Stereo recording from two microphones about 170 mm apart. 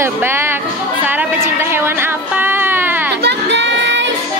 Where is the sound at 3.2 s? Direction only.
90° right.